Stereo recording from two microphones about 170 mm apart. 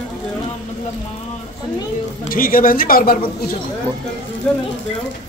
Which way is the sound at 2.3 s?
55° left (ahead or behind).